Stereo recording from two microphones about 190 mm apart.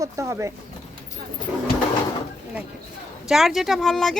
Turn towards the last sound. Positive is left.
turn(degrees=0)  # may be behind; listen again after turning